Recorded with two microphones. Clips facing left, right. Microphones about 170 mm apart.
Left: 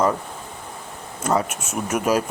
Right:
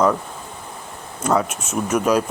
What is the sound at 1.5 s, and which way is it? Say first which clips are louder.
Speech: right 3 dB; 55° left (ahead or behind).